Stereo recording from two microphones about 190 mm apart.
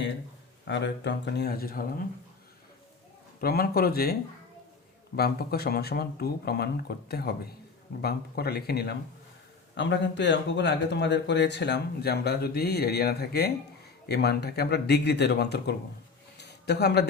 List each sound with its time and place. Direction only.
0.7 s speech: 65° left (ahead or behind)
3.4 s speech: 55° left (ahead or behind)
16.4 s a sound: 60° left (ahead or behind)